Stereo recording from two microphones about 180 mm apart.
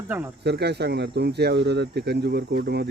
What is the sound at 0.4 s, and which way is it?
Speech, 65° right (ahead or behind).